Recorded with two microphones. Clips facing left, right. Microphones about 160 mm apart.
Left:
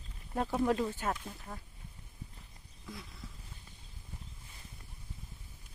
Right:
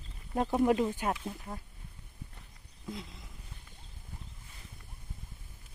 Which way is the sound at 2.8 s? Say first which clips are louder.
Right 5 dB; 20° right (ahead or behind).